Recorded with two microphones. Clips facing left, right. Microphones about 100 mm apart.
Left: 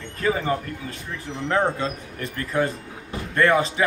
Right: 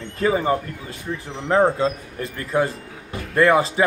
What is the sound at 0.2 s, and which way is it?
A man's voice, 25° right (ahead or behind).